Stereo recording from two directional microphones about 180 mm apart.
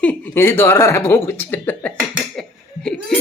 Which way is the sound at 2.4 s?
5° left (ahead or behind).